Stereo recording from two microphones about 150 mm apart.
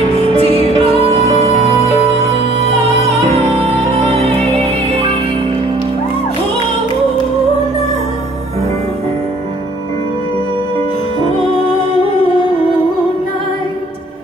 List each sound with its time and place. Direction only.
0.3 s music: 40° right (ahead or behind)
3.2 s music: 40° right (ahead or behind)
11.2 s music: 40° right (ahead or behind)